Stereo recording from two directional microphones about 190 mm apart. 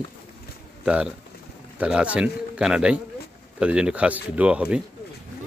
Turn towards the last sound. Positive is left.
turn(degrees=-5)  # may be behind; listen again after turning